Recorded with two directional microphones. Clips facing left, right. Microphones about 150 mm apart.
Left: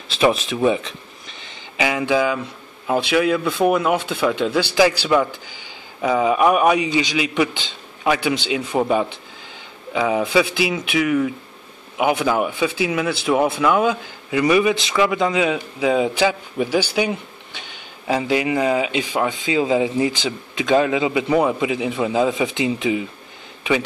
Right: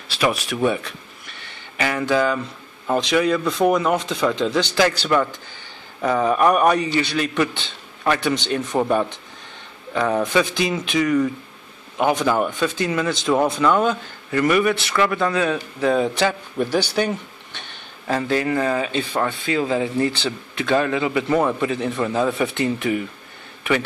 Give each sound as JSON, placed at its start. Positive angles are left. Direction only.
{"t": 0.2, "sound": "speech", "side_deg": 20}
{"t": 1.8, "sound": "speech", "side_deg": 10}